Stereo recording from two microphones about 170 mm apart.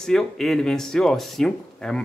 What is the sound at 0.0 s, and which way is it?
A man's voice, 5° left (ahead or behind).